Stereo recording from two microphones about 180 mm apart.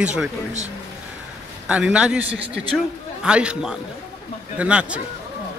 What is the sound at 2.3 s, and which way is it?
Speech, 75° right (ahead or behind).